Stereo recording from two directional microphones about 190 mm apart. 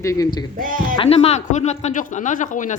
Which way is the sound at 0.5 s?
45° right (ahead or behind).